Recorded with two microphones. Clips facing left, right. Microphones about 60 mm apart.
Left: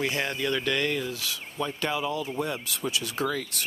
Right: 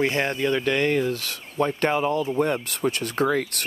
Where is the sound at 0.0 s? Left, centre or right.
Right.